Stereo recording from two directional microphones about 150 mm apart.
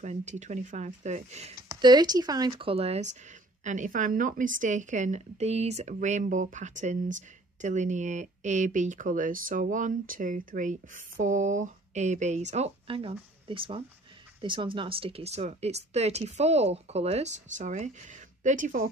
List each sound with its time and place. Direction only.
0.0 s speech: 50° right (ahead or behind)
1.7 s speech: 30° right (ahead or behind)
2.7 s speech: 45° right (ahead or behind)
3.6 s a woman's voice: 55° right (ahead or behind)